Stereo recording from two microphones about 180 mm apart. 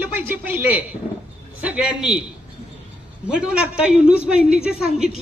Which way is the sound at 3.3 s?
5° right (ahead or behind).